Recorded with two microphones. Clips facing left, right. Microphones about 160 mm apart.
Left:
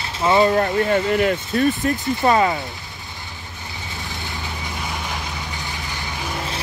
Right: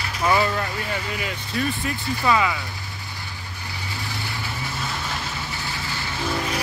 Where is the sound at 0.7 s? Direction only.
55° left (ahead or behind).